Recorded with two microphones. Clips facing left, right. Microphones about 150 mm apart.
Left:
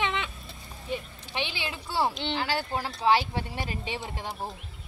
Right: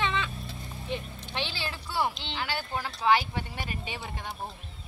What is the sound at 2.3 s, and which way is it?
Speech, 35° left (ahead or behind).